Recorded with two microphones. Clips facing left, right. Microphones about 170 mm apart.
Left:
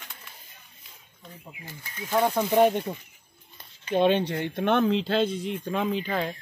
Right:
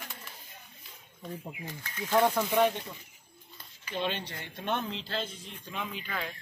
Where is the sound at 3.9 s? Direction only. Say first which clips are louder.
Left 12 dB; 55° left (ahead or behind).